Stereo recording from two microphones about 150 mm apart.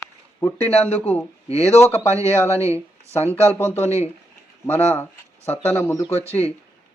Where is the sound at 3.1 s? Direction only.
15° left (ahead or behind).